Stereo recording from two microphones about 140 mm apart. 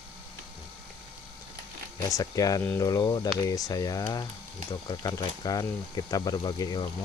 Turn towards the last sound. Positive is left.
turn(degrees=30)  # may be behind; listen again after turning